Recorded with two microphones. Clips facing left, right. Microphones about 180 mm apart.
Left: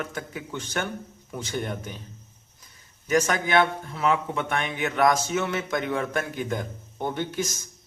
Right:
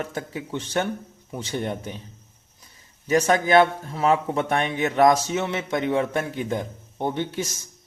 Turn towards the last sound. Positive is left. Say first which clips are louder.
# right 3 dB
turn(degrees=-25)  # may be behind; listen again after turning